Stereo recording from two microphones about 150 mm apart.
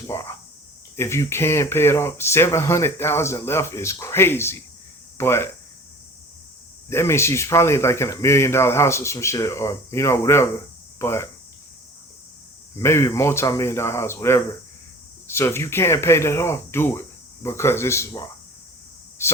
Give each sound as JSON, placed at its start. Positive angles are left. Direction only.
{"t": 0.1, "sound": "a sound", "side_deg": 20}
{"t": 0.9, "sound": "speech", "side_deg": 15}
{"t": 6.9, "sound": "speech", "side_deg": 15}
{"t": 12.8, "sound": "speech", "side_deg": 20}